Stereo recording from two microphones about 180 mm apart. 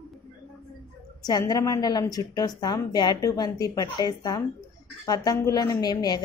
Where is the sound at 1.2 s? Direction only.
20° left (ahead or behind).